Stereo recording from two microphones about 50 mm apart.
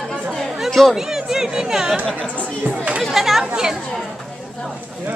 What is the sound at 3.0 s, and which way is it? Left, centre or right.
Speech, centre.